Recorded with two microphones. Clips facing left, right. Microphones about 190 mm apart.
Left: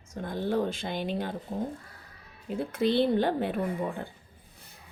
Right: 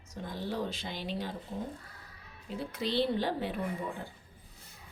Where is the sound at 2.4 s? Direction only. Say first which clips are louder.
Left 8 dB; 55° left (ahead or behind).